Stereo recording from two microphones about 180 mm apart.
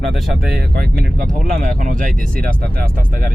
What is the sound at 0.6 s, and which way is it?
Speech, 55° right (ahead or behind).